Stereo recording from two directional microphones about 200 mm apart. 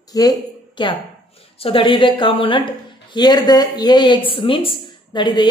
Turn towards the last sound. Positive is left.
turn(degrees=20)  # may be behind; listen again after turning